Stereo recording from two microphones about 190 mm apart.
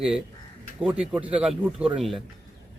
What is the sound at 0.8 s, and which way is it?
Speech, 5° right (ahead or behind).